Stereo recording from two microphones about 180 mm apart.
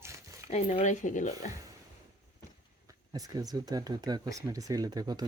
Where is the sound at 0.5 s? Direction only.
35° left (ahead or behind).